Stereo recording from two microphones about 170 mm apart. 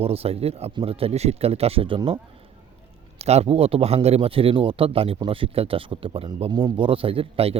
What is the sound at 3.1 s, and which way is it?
A man's voice, 40° right (ahead or behind).